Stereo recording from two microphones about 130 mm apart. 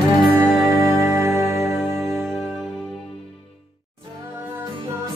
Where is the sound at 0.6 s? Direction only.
25° right (ahead or behind).